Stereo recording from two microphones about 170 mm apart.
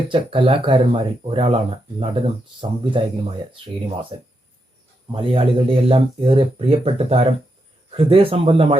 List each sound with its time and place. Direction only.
0.1 s speech: 30° right (ahead or behind)
5.1 s speech: 30° right (ahead or behind)